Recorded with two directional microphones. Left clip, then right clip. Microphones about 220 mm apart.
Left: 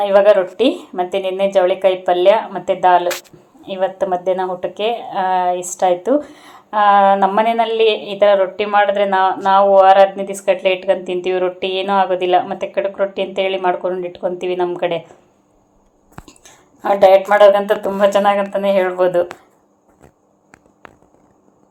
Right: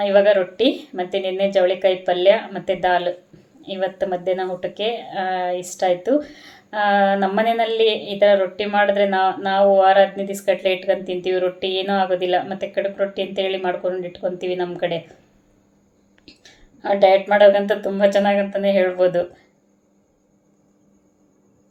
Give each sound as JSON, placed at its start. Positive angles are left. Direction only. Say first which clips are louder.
{"t": 0.0, "sound": "speech", "louder": "left 4 dB", "side_deg": 10}
{"t": 16.8, "sound": "speech", "louder": "left 4 dB", "side_deg": 10}